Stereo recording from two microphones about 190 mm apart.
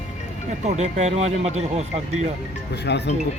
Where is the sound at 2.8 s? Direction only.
65° left (ahead or behind).